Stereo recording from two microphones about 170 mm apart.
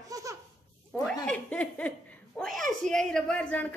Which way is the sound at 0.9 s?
5° left (ahead or behind).